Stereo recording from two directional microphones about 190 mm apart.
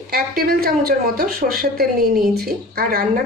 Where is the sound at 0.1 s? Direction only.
55° right (ahead or behind).